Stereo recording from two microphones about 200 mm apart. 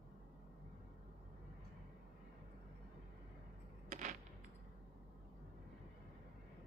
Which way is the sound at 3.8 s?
40° right (ahead or behind).